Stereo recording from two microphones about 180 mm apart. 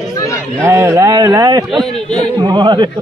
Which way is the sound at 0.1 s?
15° left (ahead or behind).